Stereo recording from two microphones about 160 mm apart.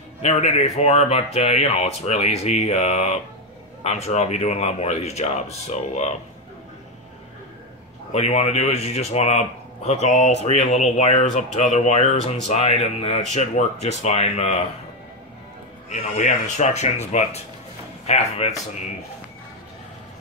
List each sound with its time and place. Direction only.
0.2 s speech: 45° left (ahead or behind)
8.1 s speech: 45° left (ahead or behind)
15.9 s speech: 50° left (ahead or behind)